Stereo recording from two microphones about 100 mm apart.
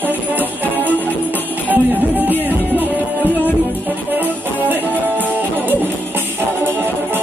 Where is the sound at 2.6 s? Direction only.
20° left (ahead or behind).